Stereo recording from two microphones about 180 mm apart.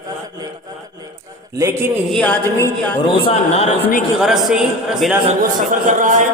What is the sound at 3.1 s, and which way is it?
Speech, 30° left (ahead or behind).